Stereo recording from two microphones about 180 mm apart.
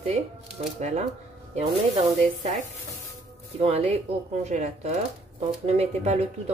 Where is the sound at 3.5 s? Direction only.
35° right (ahead or behind).